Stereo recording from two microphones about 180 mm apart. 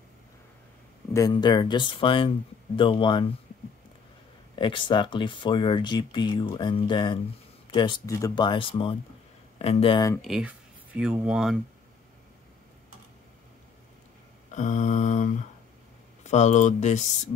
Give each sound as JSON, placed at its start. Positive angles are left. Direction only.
{"t": 1.1, "sound": "speech", "side_deg": 20}
{"t": 4.6, "sound": "speech", "side_deg": 25}
{"t": 10.2, "sound": "speech", "side_deg": 0}
{"t": 14.5, "sound": "mantra", "side_deg": 40}
{"t": 16.3, "sound": "speech", "side_deg": 40}